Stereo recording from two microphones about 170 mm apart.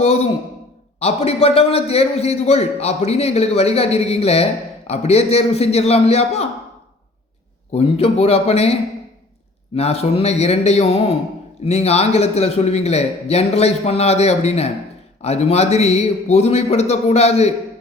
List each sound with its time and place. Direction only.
0.0 s a man's voice: 40° left (ahead or behind)
7.7 s a man's voice: 35° left (ahead or behind)